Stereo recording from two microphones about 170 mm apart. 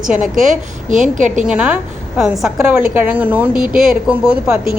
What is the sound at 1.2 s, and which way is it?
Speech, 45° right (ahead or behind).